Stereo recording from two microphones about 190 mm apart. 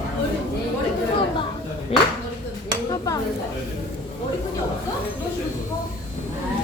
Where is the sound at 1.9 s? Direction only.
30° left (ahead or behind).